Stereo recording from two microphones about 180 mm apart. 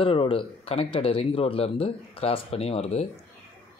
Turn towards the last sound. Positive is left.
turn(degrees=35)  # may be behind; listen again after turning